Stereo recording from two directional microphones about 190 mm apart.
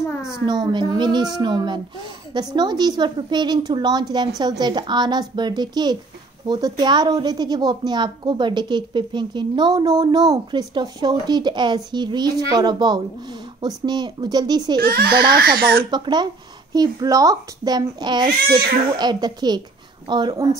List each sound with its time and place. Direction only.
0.1 s a sound: 15° left (ahead or behind)
0.5 s a woman's voice: 25° right (ahead or behind)
14.8 s speech: 55° right (ahead or behind)
15.9 s a woman's voice: 20° right (ahead or behind)